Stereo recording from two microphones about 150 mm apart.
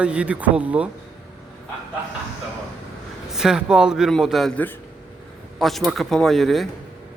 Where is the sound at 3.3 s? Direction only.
5° right (ahead or behind).